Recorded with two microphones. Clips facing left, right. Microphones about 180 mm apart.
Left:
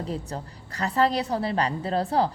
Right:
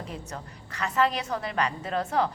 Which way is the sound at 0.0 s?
35° left (ahead or behind).